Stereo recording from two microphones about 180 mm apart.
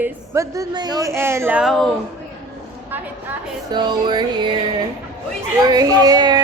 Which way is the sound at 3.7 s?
25° right (ahead or behind).